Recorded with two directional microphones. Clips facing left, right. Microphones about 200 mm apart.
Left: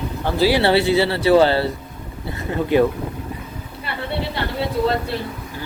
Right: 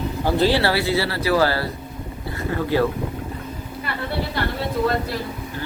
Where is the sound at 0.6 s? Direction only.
25° left (ahead or behind).